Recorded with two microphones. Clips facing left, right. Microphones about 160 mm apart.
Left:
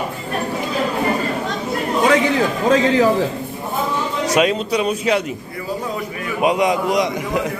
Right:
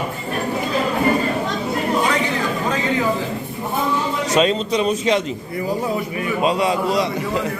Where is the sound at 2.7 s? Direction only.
90° left.